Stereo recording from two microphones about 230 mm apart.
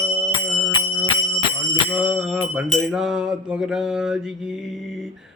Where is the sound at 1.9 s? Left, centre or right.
Centre.